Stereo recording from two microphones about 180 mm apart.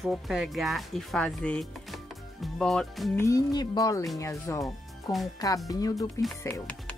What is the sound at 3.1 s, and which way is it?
Speech, 20° left (ahead or behind).